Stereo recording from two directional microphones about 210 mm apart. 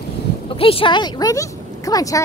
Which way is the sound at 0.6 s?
25° left (ahead or behind).